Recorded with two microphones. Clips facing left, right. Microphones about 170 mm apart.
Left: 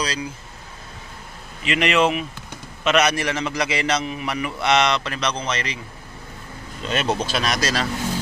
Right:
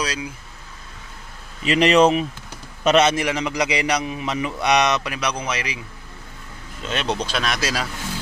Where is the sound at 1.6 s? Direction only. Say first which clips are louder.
Right 4 dB; 35° right (ahead or behind); by 5.7 s 10° right (ahead or behind).